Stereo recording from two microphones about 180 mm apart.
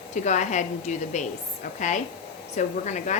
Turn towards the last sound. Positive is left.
turn(degrees=40)  # may be behind; listen again after turning